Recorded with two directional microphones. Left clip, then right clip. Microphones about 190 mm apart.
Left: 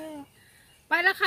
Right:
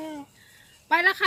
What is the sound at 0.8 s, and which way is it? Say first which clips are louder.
Speech: right 2 dB; 15° right (ahead or behind).